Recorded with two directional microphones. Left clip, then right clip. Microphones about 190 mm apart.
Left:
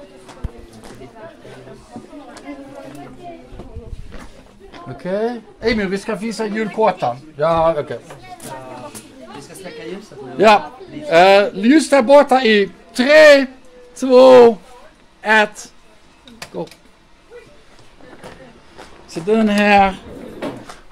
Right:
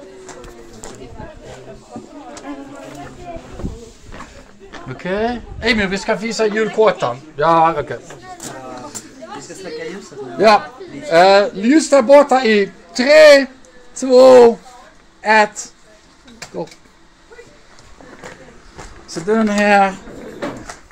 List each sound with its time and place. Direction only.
4.8 s speech: 15° right (ahead or behind)
7.6 s speech: 5° right (ahead or behind)
11.1 s a man's voice: 15° left (ahead or behind); by 15.7 s centre (ahead or behind)
19.3 s a man's voice: 10° left (ahead or behind)